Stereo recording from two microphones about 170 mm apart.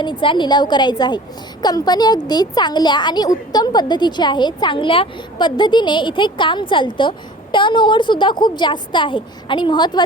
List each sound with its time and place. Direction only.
0.0 s speech: 30° left (ahead or behind)